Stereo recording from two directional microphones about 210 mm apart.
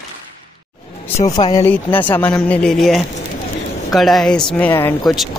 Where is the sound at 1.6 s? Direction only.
10° left (ahead or behind).